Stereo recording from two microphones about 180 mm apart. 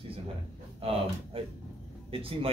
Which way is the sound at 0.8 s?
30° right (ahead or behind).